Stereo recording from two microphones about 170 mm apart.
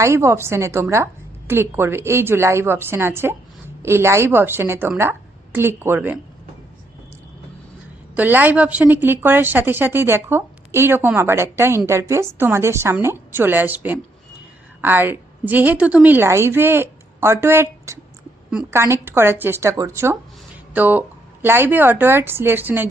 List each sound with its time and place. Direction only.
0.0 s speech: 15° right (ahead or behind)
8.1 s a woman's voice: 10° right (ahead or behind)